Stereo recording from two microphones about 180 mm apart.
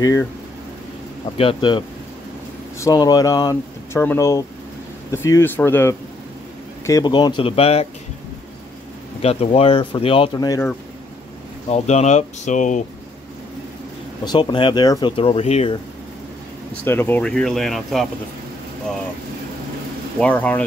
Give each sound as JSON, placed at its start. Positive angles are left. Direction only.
{"t": 0.0, "sound": "speech", "side_deg": 15}
{"t": 1.4, "sound": "speech", "side_deg": 30}
{"t": 6.9, "sound": "speech", "side_deg": 25}
{"t": 9.2, "sound": "speech", "side_deg": 35}
{"t": 11.7, "sound": "speech", "side_deg": 40}
{"t": 14.2, "sound": "speech", "side_deg": 25}
{"t": 16.8, "sound": "speech", "side_deg": 10}
{"t": 20.2, "sound": "speech", "side_deg": 10}